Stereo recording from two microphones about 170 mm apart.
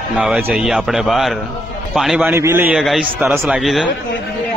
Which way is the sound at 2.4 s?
15° right (ahead or behind).